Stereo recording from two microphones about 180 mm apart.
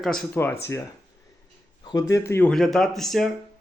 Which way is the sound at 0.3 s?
15° left (ahead or behind).